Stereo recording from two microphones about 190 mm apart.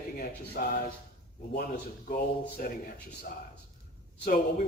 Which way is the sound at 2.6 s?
50° left (ahead or behind).